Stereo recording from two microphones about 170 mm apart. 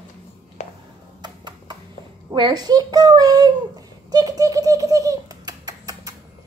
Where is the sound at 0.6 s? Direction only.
45° left (ahead or behind).